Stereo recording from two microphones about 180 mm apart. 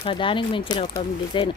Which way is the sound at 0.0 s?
30° left (ahead or behind).